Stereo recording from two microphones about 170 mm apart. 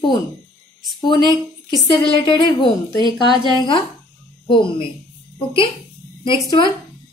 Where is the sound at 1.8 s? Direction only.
25° left (ahead or behind).